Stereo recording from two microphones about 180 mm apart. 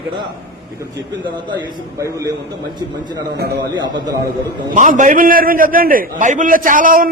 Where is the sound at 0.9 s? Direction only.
25° right (ahead or behind).